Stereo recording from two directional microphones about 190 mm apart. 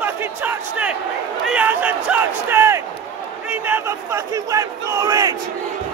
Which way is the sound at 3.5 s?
10° right (ahead or behind).